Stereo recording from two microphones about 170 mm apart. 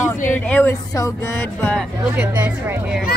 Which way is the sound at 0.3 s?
10° left (ahead or behind).